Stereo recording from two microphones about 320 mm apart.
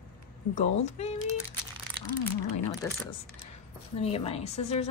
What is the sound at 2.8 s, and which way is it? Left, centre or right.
Speech, centre.